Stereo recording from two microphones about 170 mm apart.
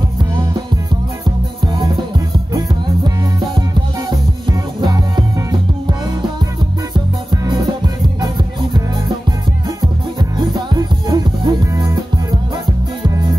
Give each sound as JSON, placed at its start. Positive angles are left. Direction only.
{"t": 2.5, "sound": "music", "side_deg": -25}
{"t": 7.4, "sound": "music", "side_deg": -25}
{"t": 10.3, "sound": "music", "side_deg": -25}